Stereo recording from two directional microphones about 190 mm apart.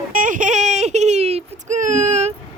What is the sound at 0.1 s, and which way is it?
Baby cry, 45° right (ahead or behind).